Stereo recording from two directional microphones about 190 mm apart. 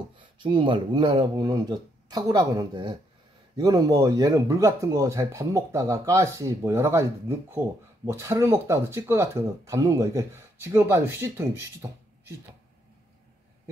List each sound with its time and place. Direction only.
0.4 s speech: 25° right (ahead or behind)